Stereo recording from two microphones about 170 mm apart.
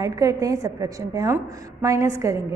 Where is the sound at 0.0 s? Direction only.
20° right (ahead or behind).